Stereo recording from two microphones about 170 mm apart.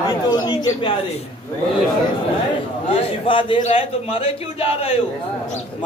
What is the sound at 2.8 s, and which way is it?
A man's voice, 30° left (ahead or behind).